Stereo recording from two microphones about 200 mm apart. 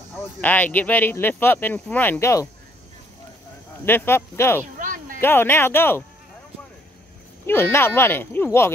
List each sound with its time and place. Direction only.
0.4 s speech: 10° left (ahead or behind)
3.8 s speech: 10° left (ahead or behind)
4.7 s a sound: 40° right (ahead or behind)
5.2 s speech: 10° left (ahead or behind)
7.4 s speech: 10° left (ahead or behind)